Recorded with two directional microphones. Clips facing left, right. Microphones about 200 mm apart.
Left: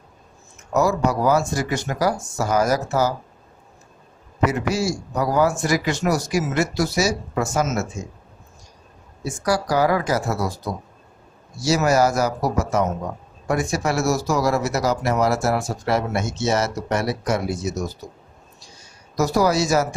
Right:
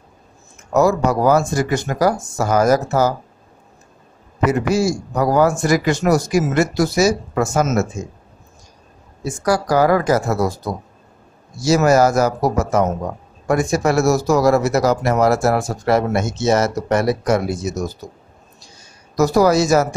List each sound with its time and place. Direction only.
0.7 s speech: 50° right (ahead or behind)
4.5 s speech: 50° right (ahead or behind)
9.2 s speech: 50° right (ahead or behind)
11.6 s speech: 50° right (ahead or behind)
19.1 s speech: 50° right (ahead or behind)